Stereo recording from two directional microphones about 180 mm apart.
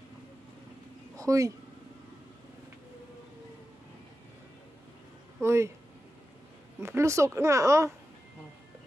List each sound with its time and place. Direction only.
1.1 s speech: 20° right (ahead or behind)
5.4 s speech: 15° right (ahead or behind)
6.8 s speech: 15° right (ahead or behind)